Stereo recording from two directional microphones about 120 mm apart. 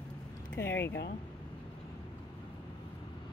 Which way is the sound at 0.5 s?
20° left (ahead or behind).